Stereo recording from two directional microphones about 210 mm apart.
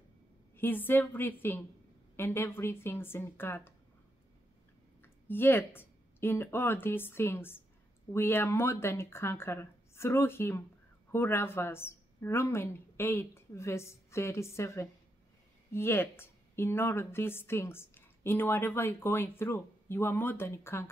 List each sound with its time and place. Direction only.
0.6 s speech: 10° left (ahead or behind)
5.0 s speech: 10° left (ahead or behind)